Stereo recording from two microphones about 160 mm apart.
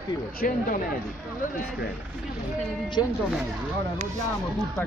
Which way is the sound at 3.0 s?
25° left (ahead or behind).